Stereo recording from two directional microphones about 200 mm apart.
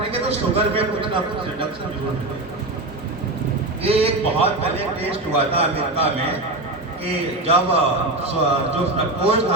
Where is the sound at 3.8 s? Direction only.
30° right (ahead or behind).